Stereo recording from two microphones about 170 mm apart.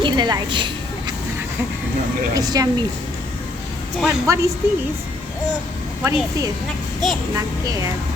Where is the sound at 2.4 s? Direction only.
20° right (ahead or behind).